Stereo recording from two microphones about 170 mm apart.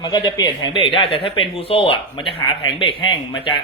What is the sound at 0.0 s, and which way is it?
Speech, 25° left (ahead or behind).